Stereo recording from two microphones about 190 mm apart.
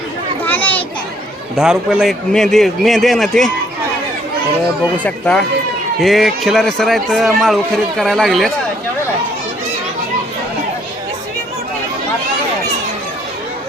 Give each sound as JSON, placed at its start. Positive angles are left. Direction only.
{"t": 0.4, "sound": "a sound", "side_deg": 10}
{"t": 1.5, "sound": "a man's voice", "side_deg": -5}
{"t": 5.0, "sound": "a man's voice", "side_deg": 5}